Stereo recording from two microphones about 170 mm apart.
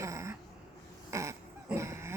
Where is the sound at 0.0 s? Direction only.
15° right (ahead or behind).